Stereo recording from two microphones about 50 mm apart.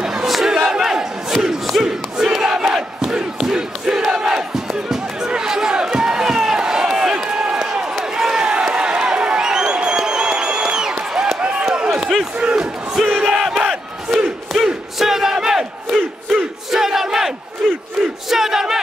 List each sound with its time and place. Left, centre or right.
0.0 s battle cry: centre
0.7 s crowd: centre
4.3 s a sound: centre
8.0 s crowd: centre
13.1 s battle cry: centre
18.3 s crowd: centre